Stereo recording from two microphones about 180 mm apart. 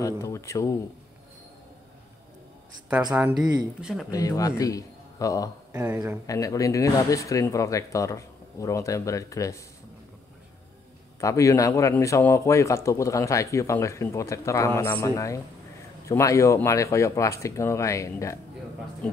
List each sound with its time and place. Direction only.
0.0 s speech: 15° left (ahead or behind)
3.3 s speech: 20° right (ahead or behind)
3.8 s speech: centre (ahead or behind)
4.1 s a man's voice: 20° left (ahead or behind)
5.7 s speech: 15° right (ahead or behind)
6.2 s speech: 20° left (ahead or behind)
11.1 s speech: 15° left (ahead or behind)